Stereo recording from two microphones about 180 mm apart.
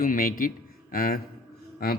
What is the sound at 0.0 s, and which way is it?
A man's voice, 50° left (ahead or behind).